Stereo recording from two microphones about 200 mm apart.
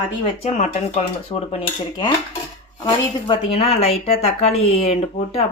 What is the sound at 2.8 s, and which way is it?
Speech, 25° left (ahead or behind).